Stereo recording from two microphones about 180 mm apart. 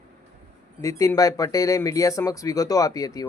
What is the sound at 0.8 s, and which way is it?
Speech, 15° left (ahead or behind).